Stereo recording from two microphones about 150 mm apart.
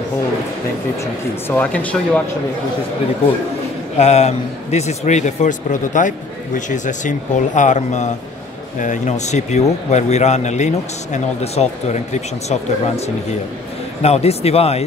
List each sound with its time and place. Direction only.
1.5 s speech: 10° left (ahead or behind)
4.0 s a man's voice: 45° left (ahead or behind)